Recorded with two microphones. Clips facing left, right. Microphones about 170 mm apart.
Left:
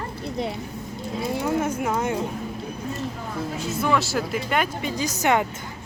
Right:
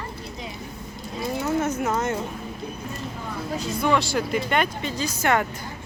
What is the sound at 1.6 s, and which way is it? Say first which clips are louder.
Speech: even; 10° left (ahead or behind).